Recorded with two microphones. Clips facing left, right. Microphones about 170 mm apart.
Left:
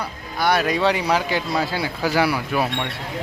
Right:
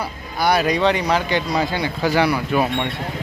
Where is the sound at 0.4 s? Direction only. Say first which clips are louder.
Right 2 dB; centre (ahead or behind).